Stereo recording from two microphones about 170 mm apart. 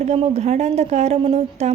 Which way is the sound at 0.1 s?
40° right (ahead or behind).